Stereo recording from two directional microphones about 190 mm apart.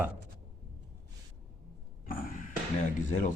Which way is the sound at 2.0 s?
45° left (ahead or behind).